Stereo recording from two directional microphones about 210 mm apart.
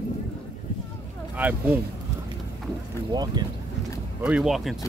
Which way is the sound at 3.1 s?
20° right (ahead or behind).